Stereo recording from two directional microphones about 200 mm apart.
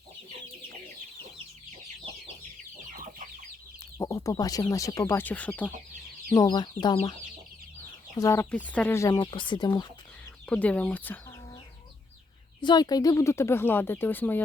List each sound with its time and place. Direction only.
2.9 s chicken: 40° right (ahead or behind)
3.9 s speech: 15° left (ahead or behind)
6.3 s speech: 20° left (ahead or behind)
8.2 s speech: 15° left (ahead or behind)
10.4 s speech: 5° left (ahead or behind)
12.6 s speech: 20° left (ahead or behind)